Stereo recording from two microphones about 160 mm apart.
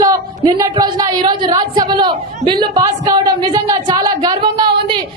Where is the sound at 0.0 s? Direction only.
25° right (ahead or behind).